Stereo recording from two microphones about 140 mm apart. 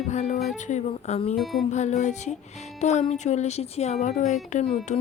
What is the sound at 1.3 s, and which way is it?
Music, centre (ahead or behind).